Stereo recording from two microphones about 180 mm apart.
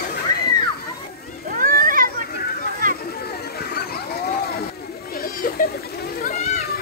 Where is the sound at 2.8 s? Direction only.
50° right (ahead or behind).